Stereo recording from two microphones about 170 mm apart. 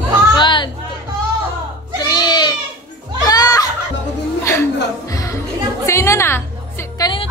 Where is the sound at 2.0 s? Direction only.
25° left (ahead or behind).